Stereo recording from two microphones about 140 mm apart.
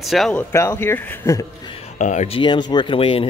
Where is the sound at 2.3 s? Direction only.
35° left (ahead or behind).